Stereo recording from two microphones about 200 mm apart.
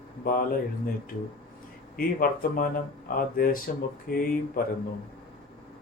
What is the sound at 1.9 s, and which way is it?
Speech, 50° left (ahead or behind).